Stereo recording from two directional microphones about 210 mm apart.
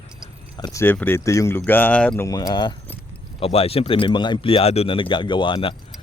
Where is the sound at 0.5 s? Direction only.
15° left (ahead or behind).